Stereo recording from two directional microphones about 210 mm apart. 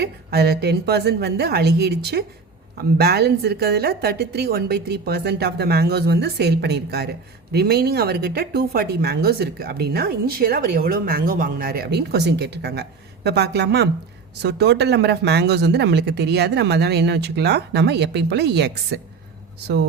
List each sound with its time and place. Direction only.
0.0 s a woman's voice: 50° right (ahead or behind)